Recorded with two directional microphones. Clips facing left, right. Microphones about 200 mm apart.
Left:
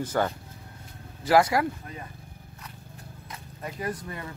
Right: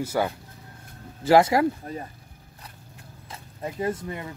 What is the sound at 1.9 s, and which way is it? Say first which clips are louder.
Speech: right 7 dB; 35° right (ahead or behind).